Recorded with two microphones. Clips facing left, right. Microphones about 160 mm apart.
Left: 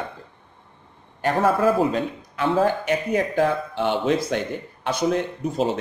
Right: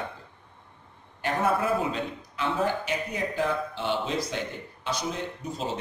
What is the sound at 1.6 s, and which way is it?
A man's voice, 45° left (ahead or behind).